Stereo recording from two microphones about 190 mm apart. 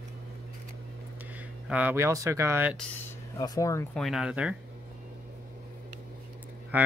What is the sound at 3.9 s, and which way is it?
Speech, centre (ahead or behind).